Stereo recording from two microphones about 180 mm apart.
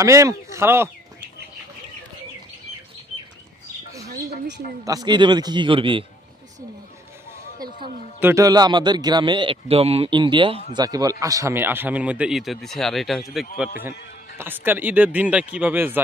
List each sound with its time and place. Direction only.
0.0 s speech: 15° right (ahead or behind)
4.8 s a man's voice: 20° right (ahead or behind)
8.2 s a man's voice: 15° right (ahead or behind)